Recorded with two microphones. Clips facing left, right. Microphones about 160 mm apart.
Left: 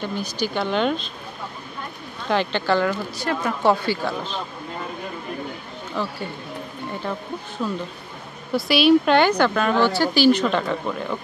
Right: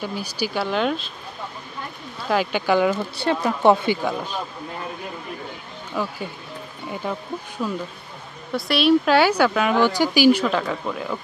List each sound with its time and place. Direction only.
0.0 s speech: 10° right (ahead or behind)
2.2 s speech: 5° right (ahead or behind)
3.2 s speech: 25° right (ahead or behind)
6.0 s speech: 10° right (ahead or behind)